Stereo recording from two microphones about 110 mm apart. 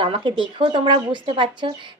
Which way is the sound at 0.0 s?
50° right (ahead or behind).